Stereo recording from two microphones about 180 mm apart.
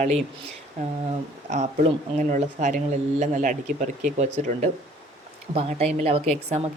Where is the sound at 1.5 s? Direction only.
40° right (ahead or behind).